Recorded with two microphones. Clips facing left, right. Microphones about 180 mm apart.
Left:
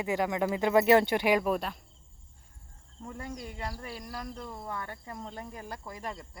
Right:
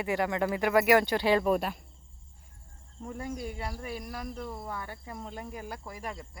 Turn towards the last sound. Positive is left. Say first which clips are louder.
# even
turn(degrees=-5)  # may be behind; listen again after turning